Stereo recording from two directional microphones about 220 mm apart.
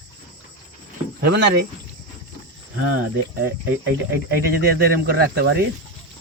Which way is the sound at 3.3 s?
45° right (ahead or behind).